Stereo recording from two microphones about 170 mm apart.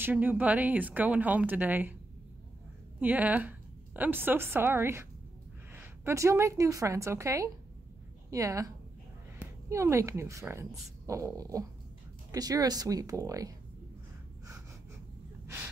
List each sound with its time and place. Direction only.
0.0 s speech: 10° right (ahead or behind)
3.0 s a woman's voice: 10° right (ahead or behind)